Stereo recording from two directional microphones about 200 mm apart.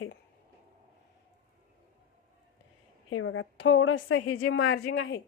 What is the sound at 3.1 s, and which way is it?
A woman's voice, 90° left.